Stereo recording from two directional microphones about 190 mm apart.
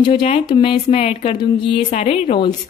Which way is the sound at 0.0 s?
30° left (ahead or behind).